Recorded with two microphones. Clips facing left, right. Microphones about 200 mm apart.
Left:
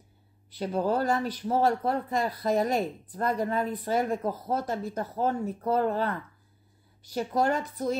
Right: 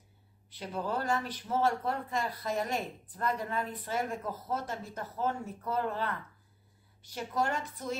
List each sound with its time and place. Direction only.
0.6 s speech: 40° left (ahead or behind)